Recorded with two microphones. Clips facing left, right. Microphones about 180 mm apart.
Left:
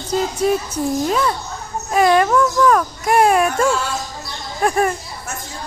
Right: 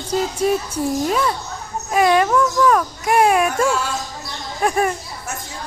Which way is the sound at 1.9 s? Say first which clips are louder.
Left 1 dB; 5° right (ahead or behind).